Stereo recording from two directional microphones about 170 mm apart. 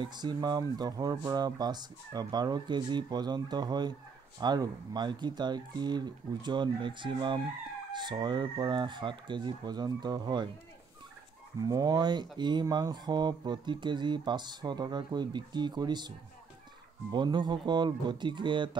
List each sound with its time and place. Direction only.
0.0 s speech: 25° right (ahead or behind)
11.6 s speech: 20° right (ahead or behind)
17.1 s speech: 25° right (ahead or behind)